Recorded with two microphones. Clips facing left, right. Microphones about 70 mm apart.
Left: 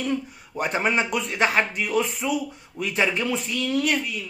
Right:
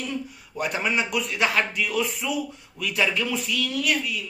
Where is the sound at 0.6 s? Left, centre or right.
Left.